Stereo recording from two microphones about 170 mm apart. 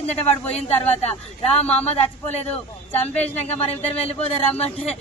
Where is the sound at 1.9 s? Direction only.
40° left (ahead or behind).